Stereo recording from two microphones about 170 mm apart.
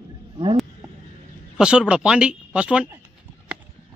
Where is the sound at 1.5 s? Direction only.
5° right (ahead or behind).